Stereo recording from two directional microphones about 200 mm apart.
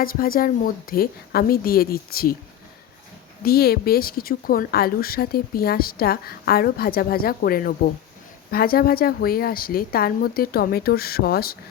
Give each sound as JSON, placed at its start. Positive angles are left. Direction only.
{"t": 0.0, "sound": "a woman's voice", "side_deg": 45}
{"t": 3.4, "sound": "a woman's voice", "side_deg": 50}